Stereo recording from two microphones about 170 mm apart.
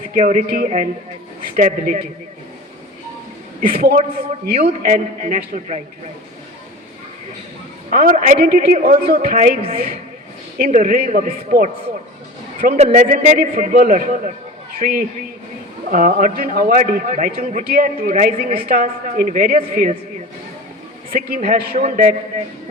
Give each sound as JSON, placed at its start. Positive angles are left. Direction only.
{"t": 0.0, "sound": "a man's voice", "side_deg": -50}
{"t": 3.6, "sound": "a man's voice", "side_deg": -60}
{"t": 7.9, "sound": "a man's voice", "side_deg": -55}
{"t": 10.7, "sound": "a man's voice", "side_deg": -50}
{"t": 12.7, "sound": "a man's voice", "side_deg": -40}
{"t": 15.9, "sound": "a man's voice", "side_deg": -45}
{"t": 21.1, "sound": "a man's voice", "side_deg": -60}
{"t": 21.8, "sound": "a man's voice", "side_deg": -45}